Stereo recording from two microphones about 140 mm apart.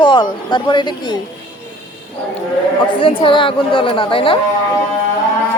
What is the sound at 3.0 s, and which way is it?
Speech, 40° left (ahead or behind).